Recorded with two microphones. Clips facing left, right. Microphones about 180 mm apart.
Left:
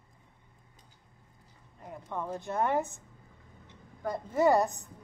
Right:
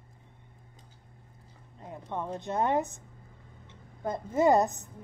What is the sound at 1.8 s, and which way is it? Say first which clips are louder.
A woman's voice: right 1 dB; 20° right (ahead or behind).